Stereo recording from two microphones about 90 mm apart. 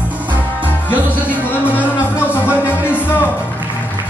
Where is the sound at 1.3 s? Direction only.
20° left (ahead or behind).